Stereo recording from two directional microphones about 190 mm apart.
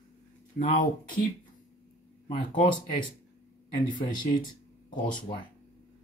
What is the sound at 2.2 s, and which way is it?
Speech, 25° left (ahead or behind).